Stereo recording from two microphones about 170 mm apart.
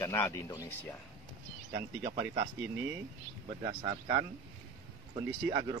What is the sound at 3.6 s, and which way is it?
Speech, 30° right (ahead or behind).